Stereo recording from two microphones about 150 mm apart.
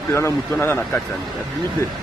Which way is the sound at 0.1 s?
15° left (ahead or behind).